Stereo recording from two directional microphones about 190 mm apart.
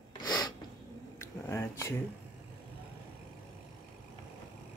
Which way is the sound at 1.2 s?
15° left (ahead or behind).